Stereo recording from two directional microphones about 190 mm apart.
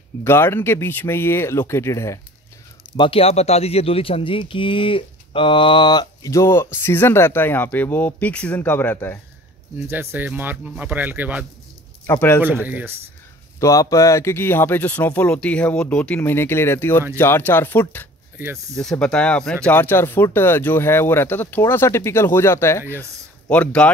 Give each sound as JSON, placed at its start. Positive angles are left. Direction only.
{"t": 0.2, "sound": "speech", "side_deg": 10}
{"t": 3.0, "sound": "speech", "side_deg": 30}
{"t": 9.8, "sound": "speech", "side_deg": -10}
{"t": 12.1, "sound": "speech", "side_deg": 10}
{"t": 12.4, "sound": "speech", "side_deg": -10}
{"t": 13.6, "sound": "speech", "side_deg": 15}
{"t": 18.4, "sound": "speech", "side_deg": -15}
{"t": 18.8, "sound": "speech", "side_deg": 5}